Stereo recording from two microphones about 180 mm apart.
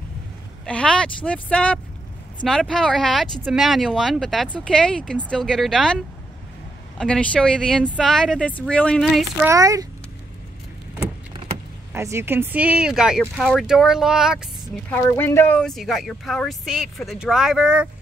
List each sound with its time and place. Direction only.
0.7 s speech: 5° left (ahead or behind)
9.4 s a child's voice: 15° right (ahead or behind)
11.9 s speech: 15° right (ahead or behind)
14.9 s speech: 10° left (ahead or behind); by 17.8 s 5° right (ahead or behind)